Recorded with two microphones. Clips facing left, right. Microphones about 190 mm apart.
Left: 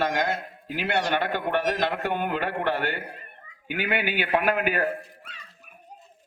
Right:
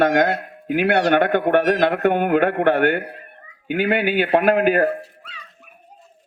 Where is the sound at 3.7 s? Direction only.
45° right (ahead or behind).